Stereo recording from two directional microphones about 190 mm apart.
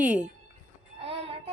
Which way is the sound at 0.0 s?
5° right (ahead or behind).